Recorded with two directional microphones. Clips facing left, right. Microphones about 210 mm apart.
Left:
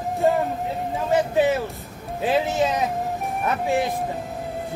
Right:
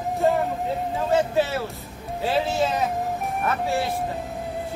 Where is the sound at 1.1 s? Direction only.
15° left (ahead or behind).